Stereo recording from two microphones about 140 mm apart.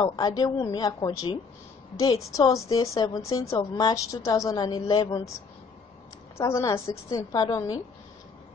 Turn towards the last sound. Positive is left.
turn(degrees=25)  # may be behind; listen again after turning